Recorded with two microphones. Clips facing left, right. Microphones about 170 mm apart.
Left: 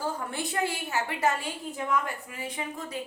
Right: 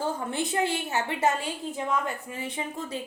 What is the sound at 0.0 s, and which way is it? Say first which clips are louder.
A woman's voice: right 3 dB; 25° right (ahead or behind).